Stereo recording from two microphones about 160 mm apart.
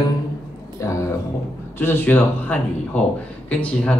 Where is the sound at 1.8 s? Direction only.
15° left (ahead or behind).